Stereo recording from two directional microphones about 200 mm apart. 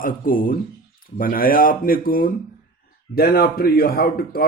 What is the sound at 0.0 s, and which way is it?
Speech, 45° left (ahead or behind).